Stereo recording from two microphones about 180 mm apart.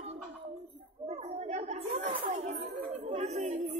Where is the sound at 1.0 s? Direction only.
35° right (ahead or behind).